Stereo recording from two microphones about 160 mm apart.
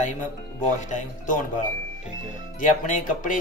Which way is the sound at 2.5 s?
55° left (ahead or behind).